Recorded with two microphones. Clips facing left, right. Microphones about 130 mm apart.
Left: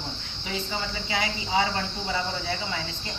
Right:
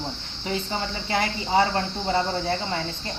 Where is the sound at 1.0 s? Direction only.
45° right (ahead or behind).